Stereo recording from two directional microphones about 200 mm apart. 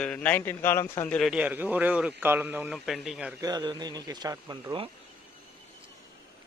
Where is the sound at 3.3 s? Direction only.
20° right (ahead or behind).